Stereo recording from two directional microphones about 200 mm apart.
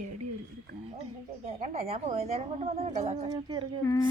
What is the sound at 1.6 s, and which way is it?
A woman's voice, 30° right (ahead or behind).